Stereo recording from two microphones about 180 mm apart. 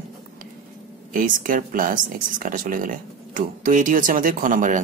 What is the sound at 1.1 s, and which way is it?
Speech, 50° right (ahead or behind).